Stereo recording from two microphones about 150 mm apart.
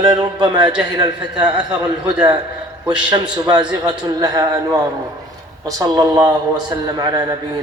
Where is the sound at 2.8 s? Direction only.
30° right (ahead or behind).